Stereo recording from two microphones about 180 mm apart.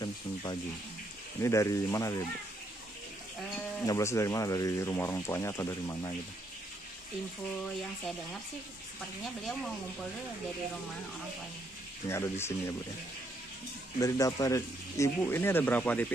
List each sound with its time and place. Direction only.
0.0 s a sound: 25° left (ahead or behind)
1.4 s speech: 15° left (ahead or behind)
3.8 s speech: 15° left (ahead or behind)
9.2 s speech: centre (ahead or behind)
12.1 s speech: 15° left (ahead or behind)
13.9 s speech: 20° left (ahead or behind)